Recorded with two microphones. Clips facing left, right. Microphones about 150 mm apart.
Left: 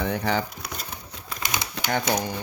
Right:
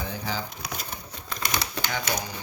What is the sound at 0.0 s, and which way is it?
Speech, 65° left (ahead or behind).